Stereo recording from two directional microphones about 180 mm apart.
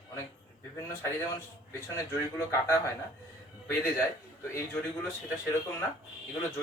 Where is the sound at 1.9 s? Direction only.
15° left (ahead or behind).